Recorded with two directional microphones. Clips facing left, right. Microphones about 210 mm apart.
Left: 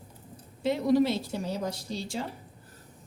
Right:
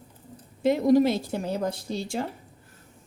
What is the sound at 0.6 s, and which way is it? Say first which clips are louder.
A woman's voice: right 4 dB; 45° right (ahead or behind).